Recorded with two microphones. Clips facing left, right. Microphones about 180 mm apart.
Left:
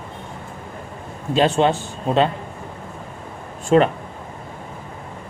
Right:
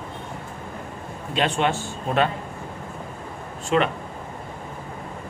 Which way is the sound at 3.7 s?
35° left (ahead or behind).